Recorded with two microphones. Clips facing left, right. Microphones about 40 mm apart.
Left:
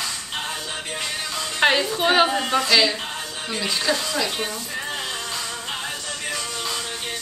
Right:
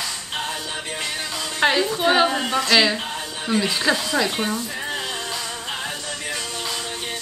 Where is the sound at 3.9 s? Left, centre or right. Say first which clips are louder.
Right 3 dB; centre.